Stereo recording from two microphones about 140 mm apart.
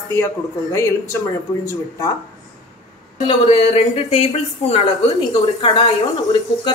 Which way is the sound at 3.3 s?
45° left (ahead or behind).